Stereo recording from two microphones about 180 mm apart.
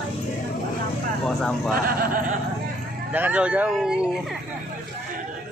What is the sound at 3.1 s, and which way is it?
Speech, 10° right (ahead or behind).